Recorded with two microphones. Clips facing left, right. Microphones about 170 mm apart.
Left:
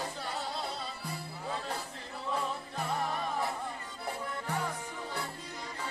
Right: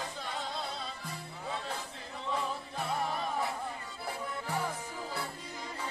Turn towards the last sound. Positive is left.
turn(degrees=-5)  # may be behind; listen again after turning